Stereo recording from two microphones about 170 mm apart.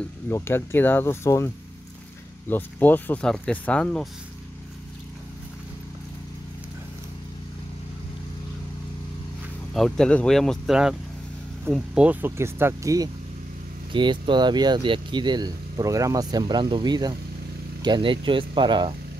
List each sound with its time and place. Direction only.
0.3 s speech: 15° left (ahead or behind)
9.8 s speech: 5° left (ahead or behind); by 18.9 s 30° right (ahead or behind)